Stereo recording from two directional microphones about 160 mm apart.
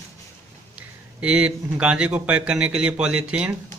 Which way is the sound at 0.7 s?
10° right (ahead or behind).